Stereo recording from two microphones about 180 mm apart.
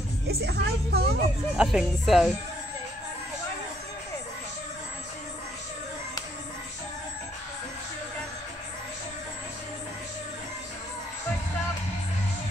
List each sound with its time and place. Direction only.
0.3 s a woman's voice: 60° right (ahead or behind)
1.6 s speech: centre (ahead or behind)